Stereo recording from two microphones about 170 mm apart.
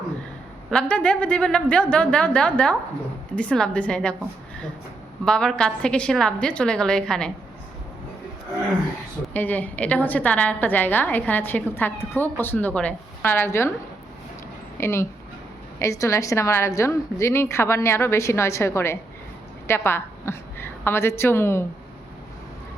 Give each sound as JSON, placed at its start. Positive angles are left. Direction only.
{"t": 0.7, "sound": "a woman's voice", "side_deg": 5}
{"t": 5.2, "sound": "a woman's voice", "side_deg": 5}
{"t": 9.3, "sound": "a woman's voice", "side_deg": 10}
{"t": 14.8, "sound": "a woman's voice", "side_deg": 15}